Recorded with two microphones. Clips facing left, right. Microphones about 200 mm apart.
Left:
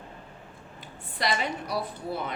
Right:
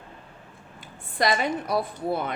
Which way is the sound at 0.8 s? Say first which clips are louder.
Right 6 dB; 50° right (ahead or behind).